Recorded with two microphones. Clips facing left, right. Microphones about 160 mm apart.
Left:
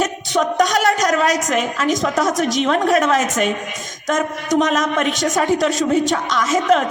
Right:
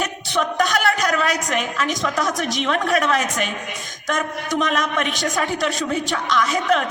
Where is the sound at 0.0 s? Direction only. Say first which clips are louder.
Left 4 dB; 40° left (ahead or behind).